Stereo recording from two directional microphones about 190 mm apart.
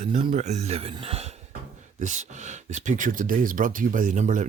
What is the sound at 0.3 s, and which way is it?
Speech, 35° right (ahead or behind).